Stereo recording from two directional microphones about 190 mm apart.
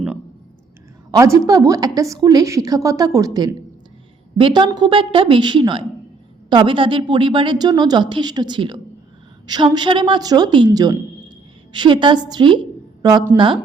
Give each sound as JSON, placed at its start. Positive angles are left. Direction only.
{"t": 1.1, "sound": "a woman's voice", "side_deg": -15}